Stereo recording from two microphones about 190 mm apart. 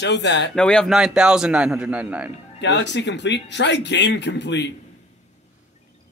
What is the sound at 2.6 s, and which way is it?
Speech, 65° left (ahead or behind).